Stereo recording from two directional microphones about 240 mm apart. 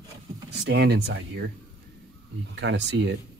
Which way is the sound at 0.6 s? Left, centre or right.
Right.